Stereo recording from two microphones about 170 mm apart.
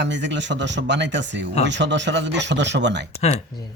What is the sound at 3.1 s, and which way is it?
Speech, 40° left (ahead or behind).